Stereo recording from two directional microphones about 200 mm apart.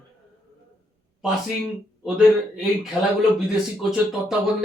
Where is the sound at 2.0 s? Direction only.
Centre (ahead or behind).